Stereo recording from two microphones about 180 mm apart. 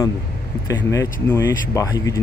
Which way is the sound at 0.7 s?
15° left (ahead or behind).